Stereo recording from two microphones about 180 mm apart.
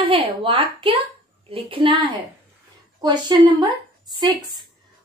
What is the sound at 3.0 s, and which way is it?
Speech, 25° right (ahead or behind).